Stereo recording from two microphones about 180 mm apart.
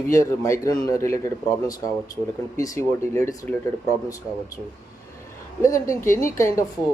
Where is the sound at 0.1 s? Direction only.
15° left (ahead or behind).